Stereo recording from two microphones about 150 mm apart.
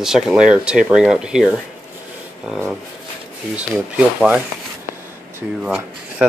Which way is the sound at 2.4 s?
Centre (ahead or behind).